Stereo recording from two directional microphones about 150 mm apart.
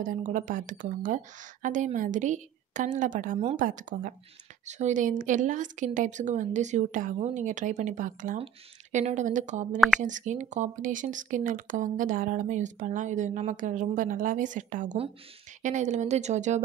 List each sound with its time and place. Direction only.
0.0 s speech: 60° right (ahead or behind)